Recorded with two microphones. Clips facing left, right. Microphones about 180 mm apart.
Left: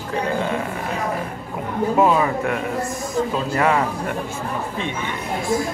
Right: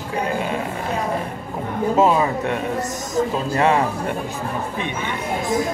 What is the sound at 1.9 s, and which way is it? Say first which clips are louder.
Speech: even; 20° right (ahead or behind).